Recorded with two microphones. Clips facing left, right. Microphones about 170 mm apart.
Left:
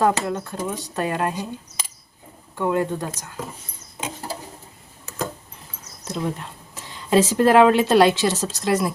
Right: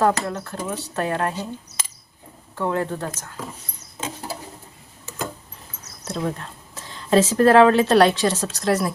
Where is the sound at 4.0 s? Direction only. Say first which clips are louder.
Even; 15° left (ahead or behind).